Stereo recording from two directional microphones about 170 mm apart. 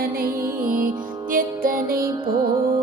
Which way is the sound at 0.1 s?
60° right (ahead or behind).